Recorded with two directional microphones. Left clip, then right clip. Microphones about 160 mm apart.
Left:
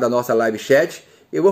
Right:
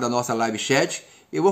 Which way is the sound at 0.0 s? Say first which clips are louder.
Left 6 dB; 15° right (ahead or behind).